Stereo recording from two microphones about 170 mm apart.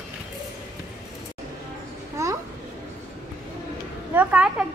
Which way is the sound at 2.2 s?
20° right (ahead or behind).